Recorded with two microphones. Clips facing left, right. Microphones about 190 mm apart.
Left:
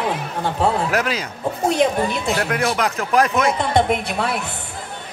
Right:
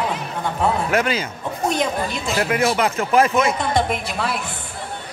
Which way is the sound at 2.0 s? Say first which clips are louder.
Left 4 dB; 60° left (ahead or behind).